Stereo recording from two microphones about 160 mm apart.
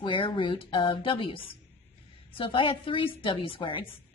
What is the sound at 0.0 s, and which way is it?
A woman's voice, 30° left (ahead or behind).